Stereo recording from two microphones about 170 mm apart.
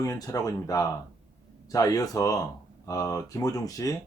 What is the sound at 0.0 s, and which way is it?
Speech, 20° left (ahead or behind).